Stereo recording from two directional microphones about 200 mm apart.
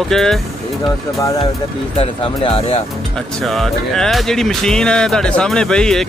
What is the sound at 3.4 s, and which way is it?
Speech, centre (ahead or behind).